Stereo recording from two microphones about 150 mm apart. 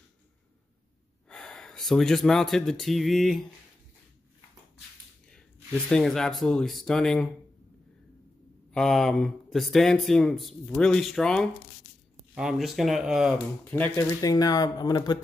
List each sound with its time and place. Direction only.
1.3 s speech: 5° left (ahead or behind)
5.9 s speech: 5° left (ahead or behind)
8.7 s speech: 5° left (ahead or behind)
13.7 s speech: 10° left (ahead or behind)
14.2 s speech: 25° left (ahead or behind)